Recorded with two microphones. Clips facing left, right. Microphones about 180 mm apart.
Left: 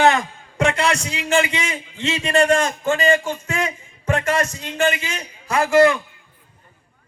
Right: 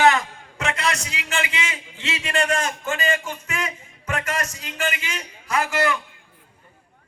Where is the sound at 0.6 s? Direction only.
30° left (ahead or behind).